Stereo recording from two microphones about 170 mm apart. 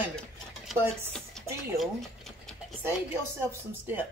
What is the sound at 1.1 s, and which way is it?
Speech, centre (ahead or behind).